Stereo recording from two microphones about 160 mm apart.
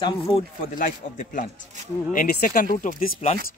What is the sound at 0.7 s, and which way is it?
Speech, 55° left (ahead or behind).